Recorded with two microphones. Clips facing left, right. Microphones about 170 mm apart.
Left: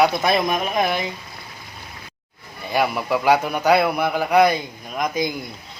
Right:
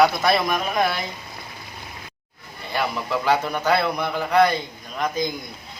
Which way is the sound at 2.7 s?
10° left (ahead or behind).